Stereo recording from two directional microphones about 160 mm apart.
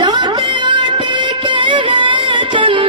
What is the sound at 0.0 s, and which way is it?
Music, 25° right (ahead or behind).